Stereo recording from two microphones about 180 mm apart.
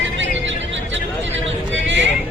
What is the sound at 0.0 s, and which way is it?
Music, 90° right.